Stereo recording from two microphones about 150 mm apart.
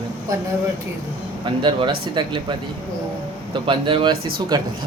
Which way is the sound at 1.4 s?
35° right (ahead or behind).